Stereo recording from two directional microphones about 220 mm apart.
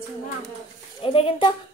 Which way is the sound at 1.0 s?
25° left (ahead or behind).